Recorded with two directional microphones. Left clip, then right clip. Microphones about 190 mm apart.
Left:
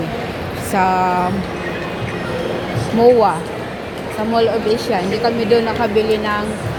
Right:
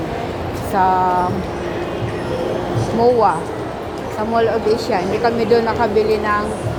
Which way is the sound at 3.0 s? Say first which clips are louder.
Left 3 dB; 15° left (ahead or behind).